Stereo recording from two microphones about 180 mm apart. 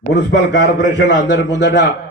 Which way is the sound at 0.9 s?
80° left.